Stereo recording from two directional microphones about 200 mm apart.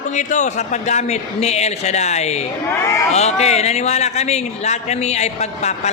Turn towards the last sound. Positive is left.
turn(degrees=35)  # may be behind; listen again after turning